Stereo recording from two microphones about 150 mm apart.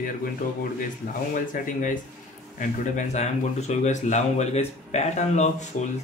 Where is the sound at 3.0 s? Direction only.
50° left (ahead or behind).